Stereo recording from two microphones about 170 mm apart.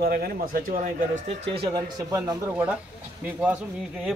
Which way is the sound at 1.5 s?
30° right (ahead or behind).